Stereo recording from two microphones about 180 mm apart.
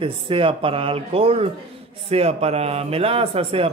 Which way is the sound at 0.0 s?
30° right (ahead or behind).